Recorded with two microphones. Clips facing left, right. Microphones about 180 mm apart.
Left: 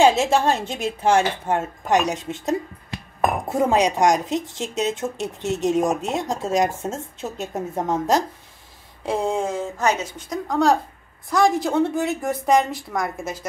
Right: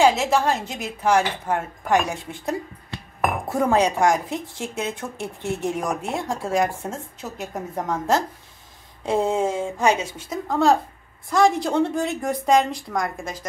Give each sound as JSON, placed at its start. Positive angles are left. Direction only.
{"t": 0.0, "sound": "speech", "side_deg": 25}
{"t": 9.0, "sound": "a woman's voice", "side_deg": 0}